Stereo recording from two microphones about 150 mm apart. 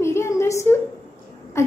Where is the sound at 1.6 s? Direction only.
20° left (ahead or behind).